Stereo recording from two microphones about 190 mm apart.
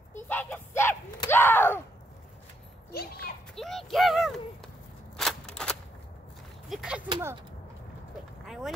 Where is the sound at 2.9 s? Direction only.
55° left (ahead or behind).